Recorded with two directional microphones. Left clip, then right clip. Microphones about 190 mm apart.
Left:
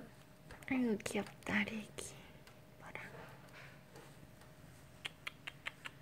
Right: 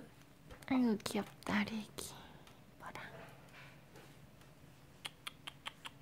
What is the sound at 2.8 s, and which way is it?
Whispering, 15° right (ahead or behind).